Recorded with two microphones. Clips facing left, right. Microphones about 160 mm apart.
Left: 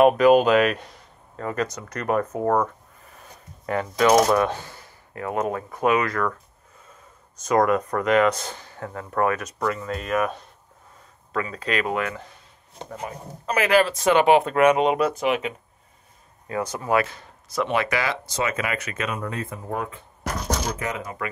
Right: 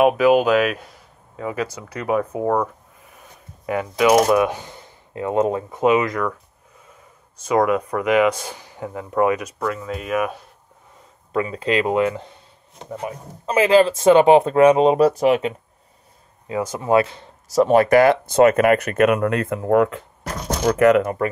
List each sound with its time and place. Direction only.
0.0 s speech: 5° right (ahead or behind)
7.4 s speech: 5° right (ahead or behind)
11.3 s speech: 20° right (ahead or behind)
16.8 s speech: 25° right (ahead or behind)
17.6 s speech: 40° right (ahead or behind); by 21.2 s 65° right (ahead or behind)